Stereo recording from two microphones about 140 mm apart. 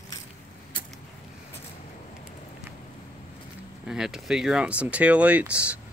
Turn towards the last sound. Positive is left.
turn(degrees=-10)  # may be behind; listen again after turning